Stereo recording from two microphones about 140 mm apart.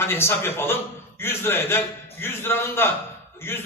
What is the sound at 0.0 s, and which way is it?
A man's voice, 15° left (ahead or behind).